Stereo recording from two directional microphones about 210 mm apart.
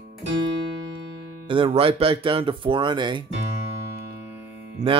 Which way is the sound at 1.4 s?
25° right (ahead or behind).